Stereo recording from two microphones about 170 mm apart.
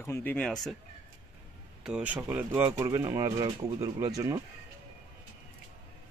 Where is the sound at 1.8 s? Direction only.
5° right (ahead or behind); by 4.1 s 30° right (ahead or behind).